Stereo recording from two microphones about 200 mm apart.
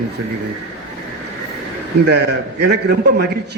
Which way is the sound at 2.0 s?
55° right (ahead or behind).